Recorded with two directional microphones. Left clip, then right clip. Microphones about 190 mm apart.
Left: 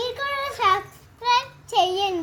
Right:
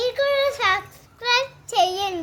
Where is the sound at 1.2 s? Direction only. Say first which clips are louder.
Even; 20° right (ahead or behind).